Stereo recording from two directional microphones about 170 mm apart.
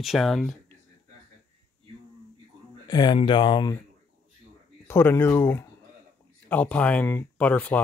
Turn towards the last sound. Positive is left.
turn(degrees=10)  # may be behind; listen again after turning